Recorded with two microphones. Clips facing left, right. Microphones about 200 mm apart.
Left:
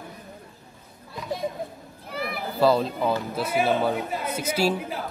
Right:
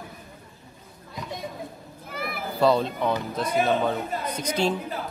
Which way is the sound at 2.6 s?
Centre (ahead or behind).